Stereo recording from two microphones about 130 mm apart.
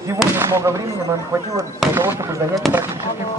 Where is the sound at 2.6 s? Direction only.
Centre (ahead or behind).